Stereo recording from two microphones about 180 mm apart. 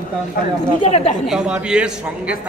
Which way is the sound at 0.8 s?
35° left (ahead or behind).